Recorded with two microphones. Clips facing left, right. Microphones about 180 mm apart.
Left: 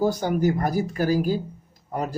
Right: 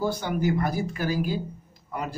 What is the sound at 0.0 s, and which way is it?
A man's voice, 40° left (ahead or behind).